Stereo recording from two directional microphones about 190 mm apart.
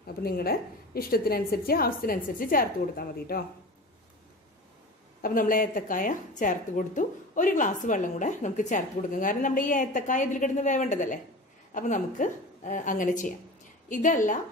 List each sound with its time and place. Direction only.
0.0 s a woman's voice: 55° left (ahead or behind)
5.2 s a woman's voice: 45° left (ahead or behind)